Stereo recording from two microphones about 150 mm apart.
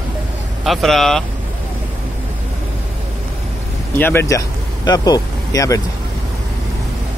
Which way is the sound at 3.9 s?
15° left (ahead or behind).